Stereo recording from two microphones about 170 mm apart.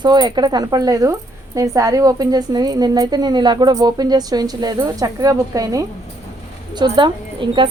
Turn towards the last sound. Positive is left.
turn(degrees=-30)  # may be behind; listen again after turning